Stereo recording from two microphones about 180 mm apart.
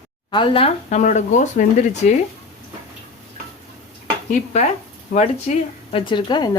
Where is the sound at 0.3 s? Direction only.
30° left (ahead or behind).